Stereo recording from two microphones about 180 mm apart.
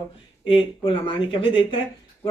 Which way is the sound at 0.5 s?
30° left (ahead or behind).